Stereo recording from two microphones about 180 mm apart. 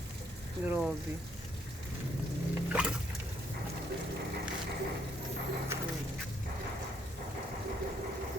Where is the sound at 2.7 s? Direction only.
5° right (ahead or behind).